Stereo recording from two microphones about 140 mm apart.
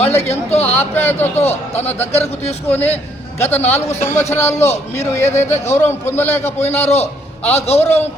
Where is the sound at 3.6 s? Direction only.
50° left (ahead or behind).